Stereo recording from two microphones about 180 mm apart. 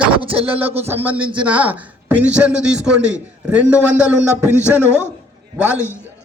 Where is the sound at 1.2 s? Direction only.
30° right (ahead or behind).